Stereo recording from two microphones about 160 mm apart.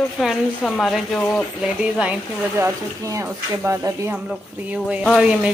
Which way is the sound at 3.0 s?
20° right (ahead or behind).